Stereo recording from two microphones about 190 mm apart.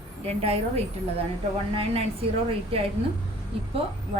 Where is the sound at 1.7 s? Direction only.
30° right (ahead or behind).